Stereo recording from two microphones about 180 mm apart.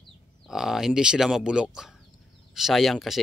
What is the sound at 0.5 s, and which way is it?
Speech, centre (ahead or behind).